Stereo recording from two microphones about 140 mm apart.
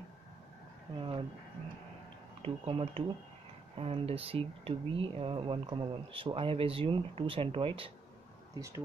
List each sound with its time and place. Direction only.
0.9 s speech: 35° right (ahead or behind)
2.4 s speech: 40° right (ahead or behind)
8.5 s speech: 20° right (ahead or behind)